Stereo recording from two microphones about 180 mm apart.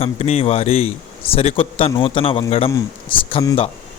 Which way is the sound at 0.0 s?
35° left (ahead or behind).